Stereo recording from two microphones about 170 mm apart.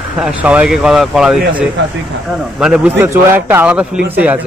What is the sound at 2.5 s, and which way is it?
A man's voice, 5° right (ahead or behind).